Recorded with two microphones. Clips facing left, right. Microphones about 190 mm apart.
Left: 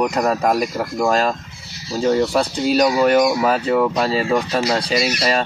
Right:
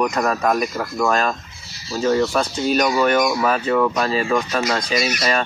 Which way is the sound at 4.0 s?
30° left (ahead or behind).